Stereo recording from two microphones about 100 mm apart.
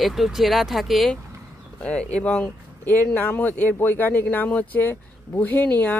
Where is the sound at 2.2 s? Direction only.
15° left (ahead or behind).